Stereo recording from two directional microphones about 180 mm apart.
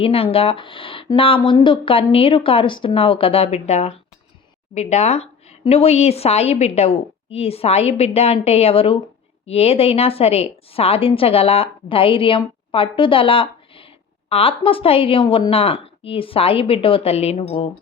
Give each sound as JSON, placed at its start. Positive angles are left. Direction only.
{"t": 0.0, "sound": "a woman's voice", "side_deg": 30}